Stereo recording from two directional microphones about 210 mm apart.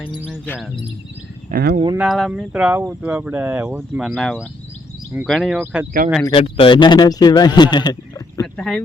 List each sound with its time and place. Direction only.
0.3 s speech: 5° left (ahead or behind)
1.5 s speech: 45° right (ahead or behind)
2.0 s speech: centre (ahead or behind)
6.2 s a man's voice: 25° left (ahead or behind)
8.5 s speech: 5° left (ahead or behind)